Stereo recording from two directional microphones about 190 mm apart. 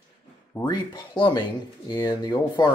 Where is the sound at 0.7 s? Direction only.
25° left (ahead or behind).